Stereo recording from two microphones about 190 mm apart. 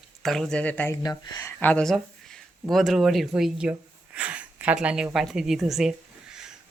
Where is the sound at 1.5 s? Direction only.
5° left (ahead or behind).